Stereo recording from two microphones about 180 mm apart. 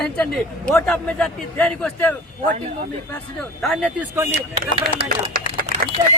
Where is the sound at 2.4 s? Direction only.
45° right (ahead or behind).